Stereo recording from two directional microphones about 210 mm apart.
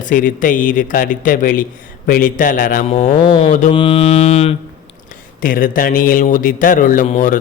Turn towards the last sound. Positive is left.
turn(degrees=35)  # may be behind; listen again after turning